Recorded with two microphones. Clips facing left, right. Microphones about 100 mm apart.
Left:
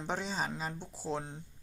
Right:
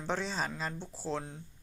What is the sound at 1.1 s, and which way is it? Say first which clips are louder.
Speech: even; 20° left (ahead or behind).